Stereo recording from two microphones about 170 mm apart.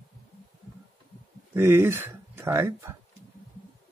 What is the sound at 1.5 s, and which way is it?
Speech, 15° right (ahead or behind).